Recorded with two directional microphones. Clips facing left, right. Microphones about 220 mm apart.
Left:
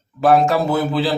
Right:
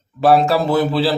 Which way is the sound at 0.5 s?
30° right (ahead or behind).